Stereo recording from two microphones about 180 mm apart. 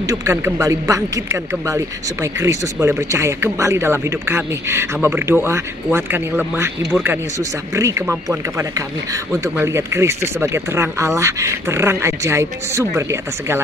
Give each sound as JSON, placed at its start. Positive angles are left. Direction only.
{"t": 0.0, "sound": "speech", "side_deg": -20}